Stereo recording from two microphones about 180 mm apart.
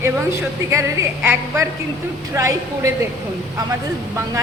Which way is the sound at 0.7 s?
15° right (ahead or behind).